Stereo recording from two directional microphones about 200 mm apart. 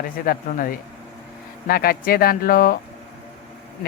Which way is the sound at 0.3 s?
45° left (ahead or behind).